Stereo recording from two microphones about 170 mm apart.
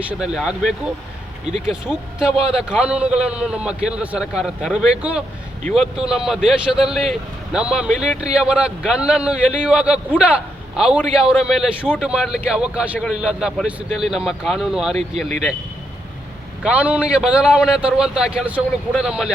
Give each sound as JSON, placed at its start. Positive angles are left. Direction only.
{"t": 0.1, "sound": "a man's voice", "side_deg": -5}
{"t": 2.3, "sound": "a man's voice", "side_deg": -35}
{"t": 2.6, "sound": "a man's voice", "side_deg": -5}
{"t": 16.6, "sound": "a man's voice", "side_deg": -5}